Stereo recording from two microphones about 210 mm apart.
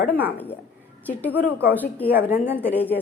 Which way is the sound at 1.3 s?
10° right (ahead or behind).